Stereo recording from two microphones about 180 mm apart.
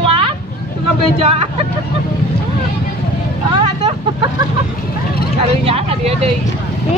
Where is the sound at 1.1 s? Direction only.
35° right (ahead or behind).